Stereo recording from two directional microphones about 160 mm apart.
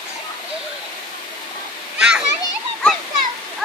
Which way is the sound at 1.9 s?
5° right (ahead or behind).